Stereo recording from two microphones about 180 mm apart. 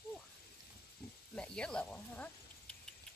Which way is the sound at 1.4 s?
5° left (ahead or behind).